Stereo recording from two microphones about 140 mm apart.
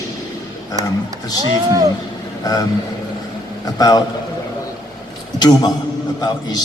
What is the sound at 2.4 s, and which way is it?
Speech, 25° left (ahead or behind).